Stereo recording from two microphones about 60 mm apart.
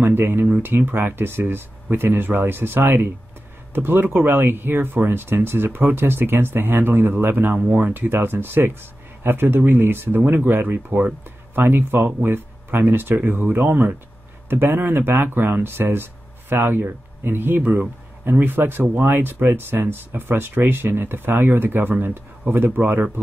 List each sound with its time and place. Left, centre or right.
0.0 s speech: right